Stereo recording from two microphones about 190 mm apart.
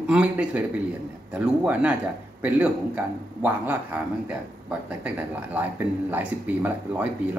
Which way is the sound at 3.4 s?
10° right (ahead or behind).